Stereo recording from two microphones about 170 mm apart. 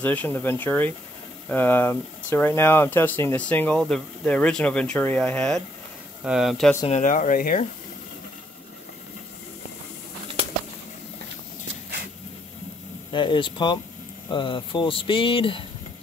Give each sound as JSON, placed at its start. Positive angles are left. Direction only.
{"t": 0.0, "sound": "speech", "side_deg": 10}
{"t": 6.9, "sound": "speech", "side_deg": 45}
{"t": 13.1, "sound": "speech", "side_deg": 30}